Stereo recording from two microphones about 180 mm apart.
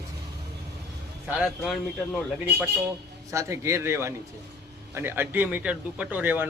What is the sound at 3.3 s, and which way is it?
Speech, 15° right (ahead or behind).